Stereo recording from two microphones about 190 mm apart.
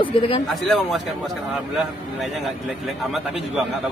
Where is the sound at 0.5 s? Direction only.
Centre (ahead or behind).